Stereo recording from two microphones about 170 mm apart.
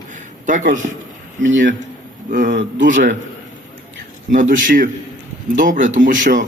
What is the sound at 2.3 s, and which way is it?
Speech, 50° right (ahead or behind).